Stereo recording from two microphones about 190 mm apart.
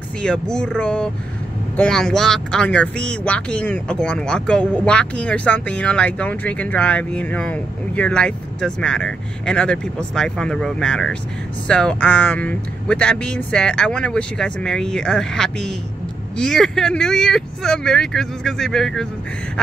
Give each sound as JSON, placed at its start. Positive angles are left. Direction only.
{"t": 0.2, "sound": "speech", "side_deg": 5}